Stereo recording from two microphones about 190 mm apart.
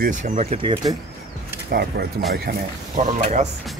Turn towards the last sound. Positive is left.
turn(degrees=-40)  # may be behind; listen again after turning